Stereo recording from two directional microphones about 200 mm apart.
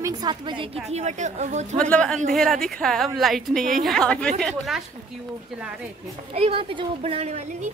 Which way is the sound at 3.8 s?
5° left (ahead or behind).